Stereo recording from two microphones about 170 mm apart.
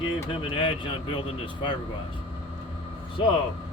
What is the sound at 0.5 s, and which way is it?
A man's voice, 30° left (ahead or behind).